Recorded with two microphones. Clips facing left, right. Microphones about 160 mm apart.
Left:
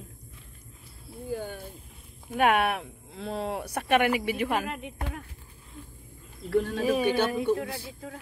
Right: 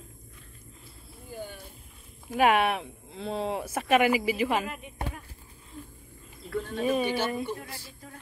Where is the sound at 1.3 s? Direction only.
60° left (ahead or behind).